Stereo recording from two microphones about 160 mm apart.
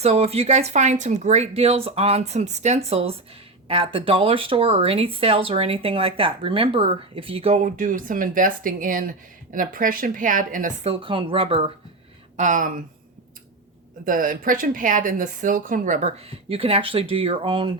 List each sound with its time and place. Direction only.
0.0 s speech: 40° right (ahead or behind)
7.6 s a woman's voice: 55° right (ahead or behind)
10.8 s speech: 35° right (ahead or behind)
12.4 s speech: 55° right (ahead or behind)
14.0 s a woman's voice: 60° right (ahead or behind); by 17.7 s 35° right (ahead or behind)